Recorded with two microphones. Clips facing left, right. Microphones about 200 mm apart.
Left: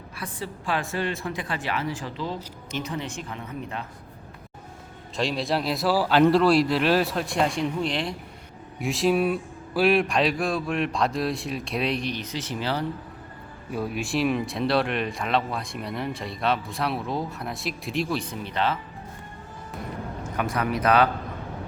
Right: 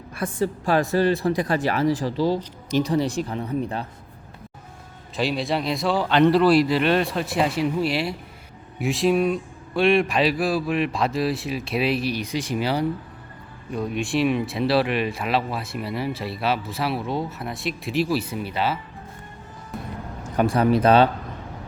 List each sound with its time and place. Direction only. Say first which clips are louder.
0.2 s speech: right 10 dB; 45° right (ahead or behind)
5.1 s speech: right 2 dB; centre (ahead or behind)
13.7 s speech: right 3 dB; 5° left (ahead or behind)
20.3 s speech: right 8 dB; 30° right (ahead or behind)